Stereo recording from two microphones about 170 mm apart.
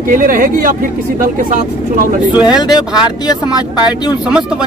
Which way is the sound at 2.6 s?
25° left (ahead or behind).